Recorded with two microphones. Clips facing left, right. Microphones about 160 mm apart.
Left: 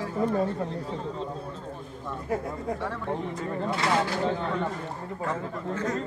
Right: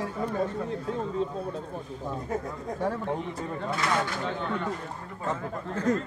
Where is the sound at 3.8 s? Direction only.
30° left (ahead or behind).